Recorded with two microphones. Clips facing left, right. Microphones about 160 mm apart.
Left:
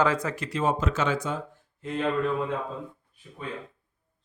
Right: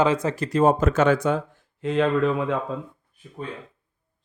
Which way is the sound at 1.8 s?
90° right.